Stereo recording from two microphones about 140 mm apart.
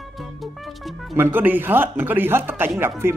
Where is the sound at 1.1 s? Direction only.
15° right (ahead or behind).